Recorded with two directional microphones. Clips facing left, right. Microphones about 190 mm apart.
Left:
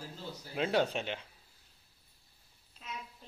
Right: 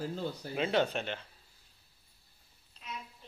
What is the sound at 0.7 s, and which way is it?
Speech, 5° left (ahead or behind).